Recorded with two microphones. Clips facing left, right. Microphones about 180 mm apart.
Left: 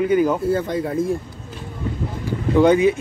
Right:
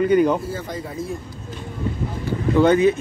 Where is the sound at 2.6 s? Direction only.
10° left (ahead or behind).